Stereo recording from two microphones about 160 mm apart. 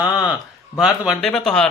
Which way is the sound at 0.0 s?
20° left (ahead or behind).